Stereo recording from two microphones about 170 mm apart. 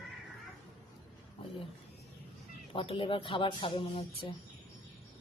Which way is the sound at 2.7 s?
30° left (ahead or behind).